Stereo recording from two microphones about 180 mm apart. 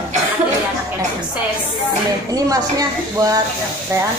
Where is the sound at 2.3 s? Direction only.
20° right (ahead or behind).